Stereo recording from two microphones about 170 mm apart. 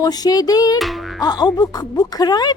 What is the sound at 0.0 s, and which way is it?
Speech, 20° left (ahead or behind).